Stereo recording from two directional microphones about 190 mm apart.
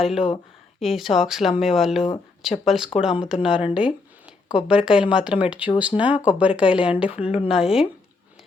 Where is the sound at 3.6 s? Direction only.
25° left (ahead or behind).